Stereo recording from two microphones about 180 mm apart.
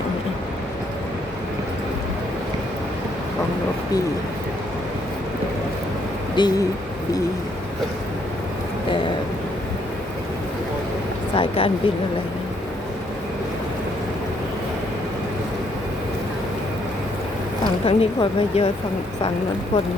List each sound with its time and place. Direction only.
6.4 s speech: 25° left (ahead or behind)
11.3 s speech: 30° left (ahead or behind)
17.6 s speech: 30° left (ahead or behind)